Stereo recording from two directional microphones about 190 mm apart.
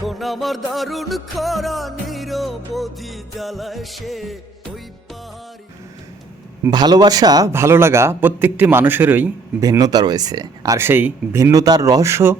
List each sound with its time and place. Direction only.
0.0 s music: centre (ahead or behind)
6.7 s speech: 20° right (ahead or behind)
9.6 s speech: 20° right (ahead or behind)